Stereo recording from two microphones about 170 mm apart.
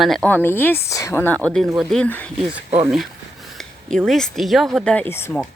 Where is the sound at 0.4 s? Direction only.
10° left (ahead or behind).